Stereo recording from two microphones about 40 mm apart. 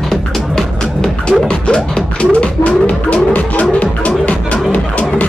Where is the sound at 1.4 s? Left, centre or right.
Left.